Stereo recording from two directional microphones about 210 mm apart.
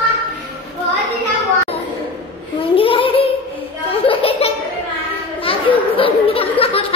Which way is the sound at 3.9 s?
25° left (ahead or behind).